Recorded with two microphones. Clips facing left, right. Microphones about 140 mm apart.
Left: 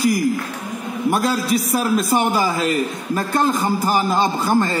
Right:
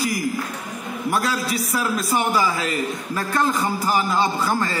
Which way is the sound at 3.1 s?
20° left (ahead or behind).